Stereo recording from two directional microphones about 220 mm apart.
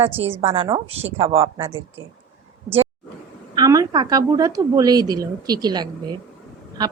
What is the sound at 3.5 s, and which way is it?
A woman's voice, 15° right (ahead or behind).